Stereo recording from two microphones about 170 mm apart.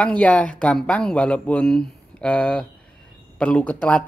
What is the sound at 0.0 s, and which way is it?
Speech, 5° left (ahead or behind).